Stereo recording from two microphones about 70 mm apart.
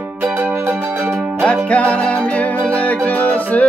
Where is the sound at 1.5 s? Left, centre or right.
Centre.